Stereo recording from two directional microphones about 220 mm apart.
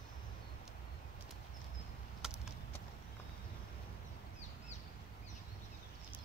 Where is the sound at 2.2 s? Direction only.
5° right (ahead or behind).